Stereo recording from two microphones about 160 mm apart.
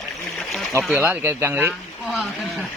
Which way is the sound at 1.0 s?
15° right (ahead or behind).